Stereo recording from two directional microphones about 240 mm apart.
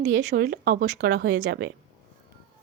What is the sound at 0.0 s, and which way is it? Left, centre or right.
Speech, right.